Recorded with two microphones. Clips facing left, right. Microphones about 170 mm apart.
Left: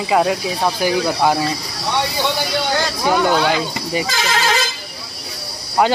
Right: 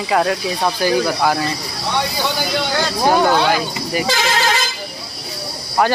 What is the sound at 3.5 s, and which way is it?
Speech, 20° left (ahead or behind).